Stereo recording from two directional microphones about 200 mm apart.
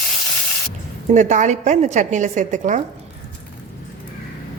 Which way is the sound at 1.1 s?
35° right (ahead or behind).